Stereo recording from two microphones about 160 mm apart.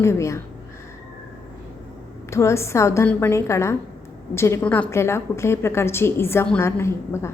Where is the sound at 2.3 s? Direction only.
15° left (ahead or behind).